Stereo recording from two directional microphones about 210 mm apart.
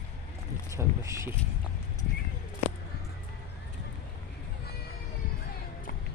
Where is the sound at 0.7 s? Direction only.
15° right (ahead or behind).